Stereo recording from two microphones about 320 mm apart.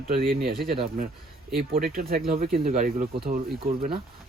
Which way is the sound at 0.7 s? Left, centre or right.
Centre.